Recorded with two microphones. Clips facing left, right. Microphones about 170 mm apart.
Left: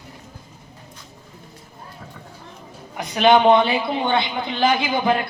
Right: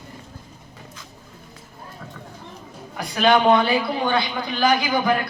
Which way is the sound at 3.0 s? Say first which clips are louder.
Left 3 dB; 20° left (ahead or behind).